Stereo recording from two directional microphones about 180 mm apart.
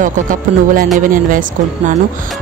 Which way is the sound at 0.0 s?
50° right (ahead or behind).